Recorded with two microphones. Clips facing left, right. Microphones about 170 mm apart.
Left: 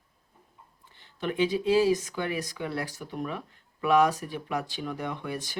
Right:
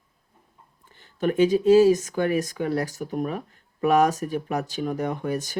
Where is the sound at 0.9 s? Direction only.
45° right (ahead or behind).